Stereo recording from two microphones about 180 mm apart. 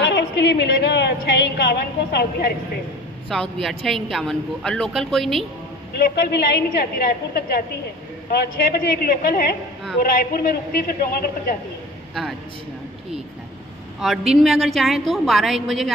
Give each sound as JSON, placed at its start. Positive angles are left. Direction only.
{"t": 0.0, "sound": "a woman's voice", "side_deg": 70}
{"t": 3.3, "sound": "a woman's voice", "side_deg": 0}
{"t": 5.9, "sound": "a woman's voice", "side_deg": 60}
{"t": 13.9, "sound": "a woman's voice", "side_deg": 0}